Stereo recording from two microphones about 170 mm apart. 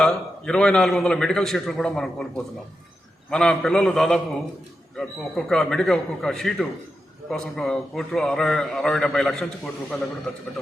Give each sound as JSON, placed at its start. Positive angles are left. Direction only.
{"t": 0.0, "sound": "a man's voice", "side_deg": 5}